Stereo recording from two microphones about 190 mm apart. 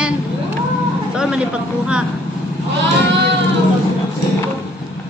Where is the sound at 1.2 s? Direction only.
5° right (ahead or behind).